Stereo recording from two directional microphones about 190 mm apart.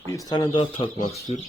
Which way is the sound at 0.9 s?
40° left (ahead or behind).